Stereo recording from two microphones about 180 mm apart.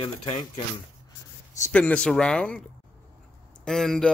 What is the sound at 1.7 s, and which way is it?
Speech, 5° left (ahead or behind).